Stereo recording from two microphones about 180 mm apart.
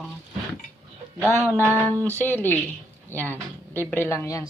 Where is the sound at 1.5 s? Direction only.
15° right (ahead or behind).